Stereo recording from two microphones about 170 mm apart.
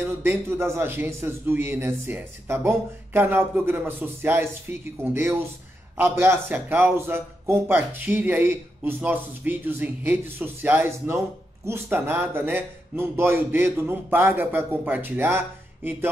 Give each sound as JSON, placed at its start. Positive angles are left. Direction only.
{"t": 0.0, "sound": "a man's voice", "side_deg": -15}